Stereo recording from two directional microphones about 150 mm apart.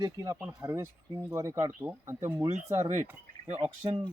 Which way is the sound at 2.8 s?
45° right (ahead or behind).